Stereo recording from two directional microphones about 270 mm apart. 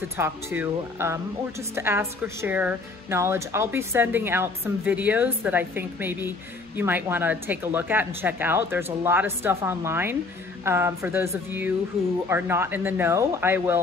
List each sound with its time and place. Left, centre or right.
0.2 s speech: centre